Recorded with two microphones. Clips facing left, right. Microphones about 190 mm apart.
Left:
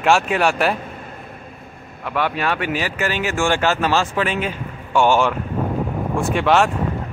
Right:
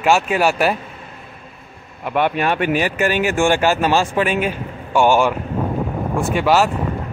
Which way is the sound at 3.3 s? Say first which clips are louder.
Right 1 dB; 15° right (ahead or behind).